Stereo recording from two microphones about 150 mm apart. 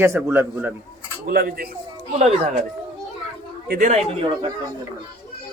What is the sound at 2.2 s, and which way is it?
Speech, 50° right (ahead or behind).